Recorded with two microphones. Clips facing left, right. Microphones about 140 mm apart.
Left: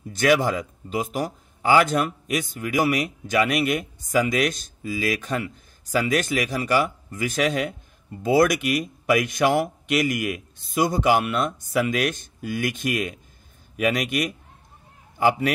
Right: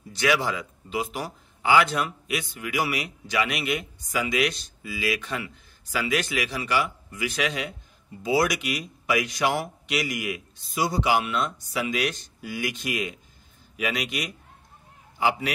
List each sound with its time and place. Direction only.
0.1 s a man's voice: 50° left (ahead or behind)